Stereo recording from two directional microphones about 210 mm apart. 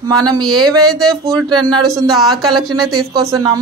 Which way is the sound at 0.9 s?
Centre (ahead or behind).